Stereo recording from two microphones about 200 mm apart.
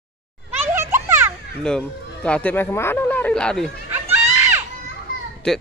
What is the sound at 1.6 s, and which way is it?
Speech, 5° left (ahead or behind).